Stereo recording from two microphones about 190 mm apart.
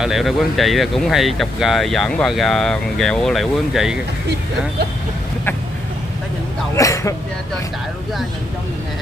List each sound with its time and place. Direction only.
0.0 s speech: centre (ahead or behind)
6.7 s speech: 15° left (ahead or behind)